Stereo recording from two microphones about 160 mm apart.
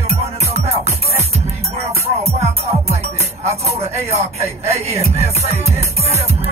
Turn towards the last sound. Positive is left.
turn(degrees=-40)  # may be behind; listen again after turning